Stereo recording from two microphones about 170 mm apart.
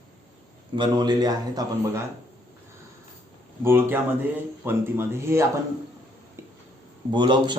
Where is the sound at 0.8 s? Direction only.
25° right (ahead or behind).